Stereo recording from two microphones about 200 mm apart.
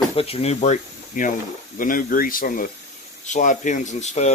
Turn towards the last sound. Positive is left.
turn(degrees=35)  # may be behind; listen again after turning